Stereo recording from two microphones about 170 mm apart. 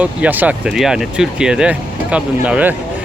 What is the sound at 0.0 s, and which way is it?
Speech, 10° right (ahead or behind).